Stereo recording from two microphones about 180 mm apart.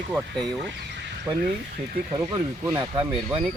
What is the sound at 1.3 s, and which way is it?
Speech, 20° right (ahead or behind).